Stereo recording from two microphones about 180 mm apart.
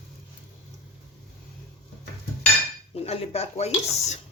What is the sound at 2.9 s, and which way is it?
Speech, 35° left (ahead or behind).